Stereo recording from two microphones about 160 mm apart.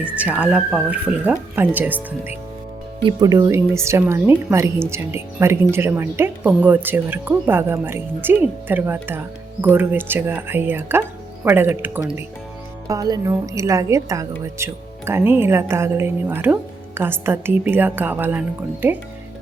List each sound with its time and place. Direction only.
0.0 s a woman's voice: 10° right (ahead or behind)
3.0 s a woman's voice: 25° right (ahead or behind); by 12.2 s 10° right (ahead or behind)
12.9 s a woman's voice: 20° right (ahead or behind)